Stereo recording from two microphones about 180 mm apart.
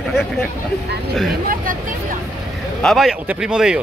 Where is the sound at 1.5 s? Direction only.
50° right (ahead or behind).